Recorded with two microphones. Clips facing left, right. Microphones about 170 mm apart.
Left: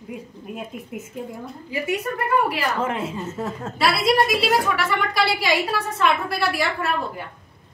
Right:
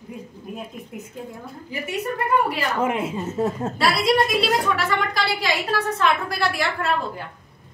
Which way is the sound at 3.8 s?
5° left (ahead or behind).